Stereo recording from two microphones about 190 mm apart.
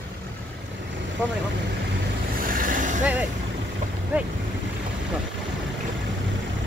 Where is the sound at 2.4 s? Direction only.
45° right (ahead or behind).